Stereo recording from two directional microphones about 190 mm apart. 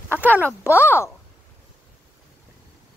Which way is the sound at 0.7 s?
10° left (ahead or behind).